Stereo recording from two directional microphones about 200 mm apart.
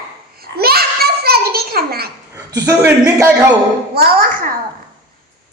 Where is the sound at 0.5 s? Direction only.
50° right (ahead or behind).